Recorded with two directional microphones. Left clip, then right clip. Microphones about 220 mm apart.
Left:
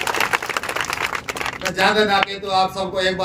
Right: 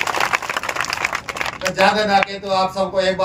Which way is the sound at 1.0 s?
40° right (ahead or behind).